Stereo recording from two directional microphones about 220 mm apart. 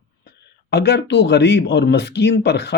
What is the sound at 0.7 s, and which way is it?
Speech, 50° left (ahead or behind).